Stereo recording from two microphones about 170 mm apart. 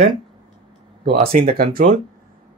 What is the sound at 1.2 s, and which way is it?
Speech, 60° right (ahead or behind).